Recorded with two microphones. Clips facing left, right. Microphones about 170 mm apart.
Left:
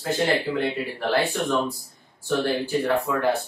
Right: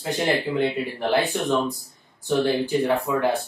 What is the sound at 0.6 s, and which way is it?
Speech, 20° right (ahead or behind).